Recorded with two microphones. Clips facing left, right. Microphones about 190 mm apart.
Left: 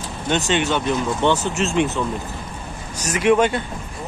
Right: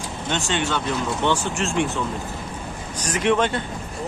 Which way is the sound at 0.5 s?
20° left (ahead or behind).